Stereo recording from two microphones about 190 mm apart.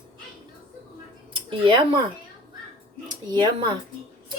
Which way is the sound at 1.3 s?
25° right (ahead or behind).